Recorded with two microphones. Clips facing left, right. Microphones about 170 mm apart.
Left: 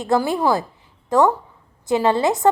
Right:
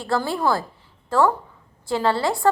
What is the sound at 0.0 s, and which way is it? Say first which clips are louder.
A woman's voice: left 4 dB; 20° left (ahead or behind).